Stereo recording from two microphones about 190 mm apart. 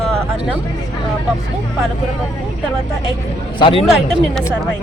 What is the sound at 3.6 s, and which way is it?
Speech, 30° left (ahead or behind).